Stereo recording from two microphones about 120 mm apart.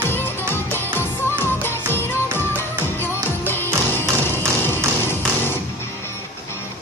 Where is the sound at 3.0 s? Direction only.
15° left (ahead or behind).